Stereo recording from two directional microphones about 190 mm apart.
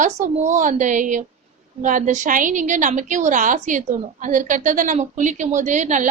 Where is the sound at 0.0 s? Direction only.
40° right (ahead or behind).